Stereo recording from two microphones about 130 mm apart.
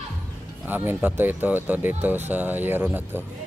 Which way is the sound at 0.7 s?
15° right (ahead or behind).